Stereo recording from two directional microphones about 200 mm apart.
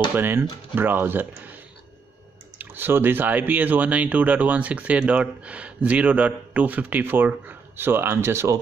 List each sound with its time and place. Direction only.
0.1 s speech: 10° right (ahead or behind)
2.6 s speech: 10° right (ahead or behind)